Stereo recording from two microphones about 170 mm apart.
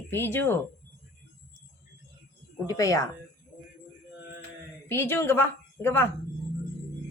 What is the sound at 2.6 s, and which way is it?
Speech, 20° left (ahead or behind).